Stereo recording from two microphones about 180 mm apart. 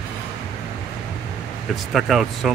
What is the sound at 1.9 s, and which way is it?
Speech, centre (ahead or behind).